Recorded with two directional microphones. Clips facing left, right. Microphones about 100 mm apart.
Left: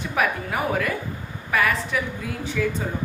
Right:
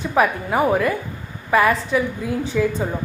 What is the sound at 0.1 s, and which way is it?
A woman's voice, 30° right (ahead or behind).